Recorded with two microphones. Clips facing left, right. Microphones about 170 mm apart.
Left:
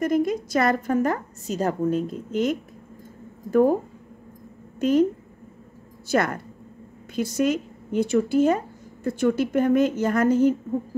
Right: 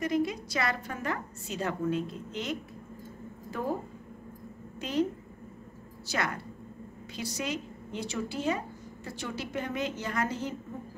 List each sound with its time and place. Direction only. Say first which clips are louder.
0.0 s a woman's voice: left 7 dB; 45° left (ahead or behind)
4.7 s a woman's voice: left 10 dB; 50° left (ahead or behind)
6.0 s a woman's voice: left 10 dB; 50° left (ahead or behind)